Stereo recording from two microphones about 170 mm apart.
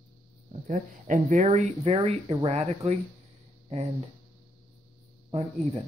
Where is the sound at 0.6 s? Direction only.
50° right (ahead or behind).